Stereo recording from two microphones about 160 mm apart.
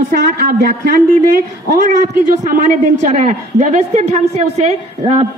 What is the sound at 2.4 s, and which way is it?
A woman's voice, 50° right (ahead or behind).